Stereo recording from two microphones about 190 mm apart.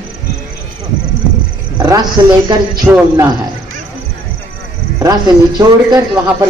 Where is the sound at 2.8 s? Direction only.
15° right (ahead or behind).